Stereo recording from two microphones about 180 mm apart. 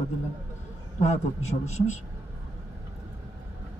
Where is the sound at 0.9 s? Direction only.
40° left (ahead or behind).